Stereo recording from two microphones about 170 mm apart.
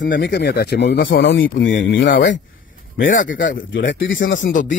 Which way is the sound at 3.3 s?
50° left (ahead or behind).